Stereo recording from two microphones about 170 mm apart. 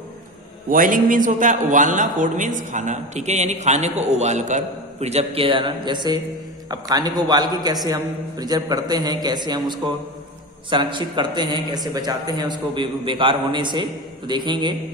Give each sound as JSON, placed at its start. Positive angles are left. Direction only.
{"t": 0.7, "sound": "a man's voice", "side_deg": -50}